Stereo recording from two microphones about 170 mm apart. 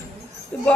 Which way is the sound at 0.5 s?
5° left (ahead or behind).